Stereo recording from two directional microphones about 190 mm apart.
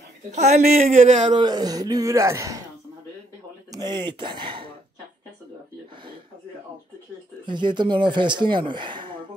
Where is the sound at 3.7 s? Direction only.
20° right (ahead or behind).